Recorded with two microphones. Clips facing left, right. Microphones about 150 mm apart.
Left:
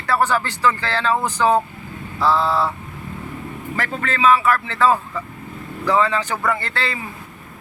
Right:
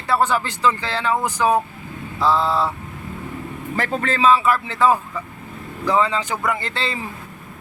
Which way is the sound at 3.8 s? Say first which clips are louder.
Right 1 dB; 35° right (ahead or behind).